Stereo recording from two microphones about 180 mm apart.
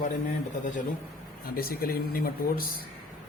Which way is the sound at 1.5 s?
55° left (ahead or behind).